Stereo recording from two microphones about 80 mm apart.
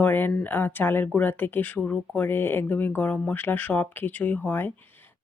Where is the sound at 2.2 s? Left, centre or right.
Left.